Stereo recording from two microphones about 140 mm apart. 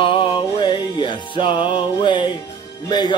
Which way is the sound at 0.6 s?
35° left (ahead or behind).